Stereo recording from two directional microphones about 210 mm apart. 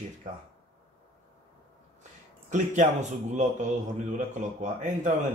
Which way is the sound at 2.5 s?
35° right (ahead or behind).